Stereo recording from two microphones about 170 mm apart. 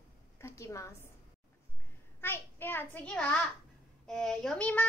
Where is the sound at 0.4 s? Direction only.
15° left (ahead or behind).